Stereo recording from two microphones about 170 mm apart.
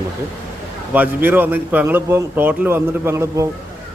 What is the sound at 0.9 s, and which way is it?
Speech, 10° right (ahead or behind).